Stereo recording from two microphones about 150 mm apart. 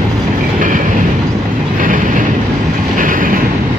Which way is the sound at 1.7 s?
60° right (ahead or behind).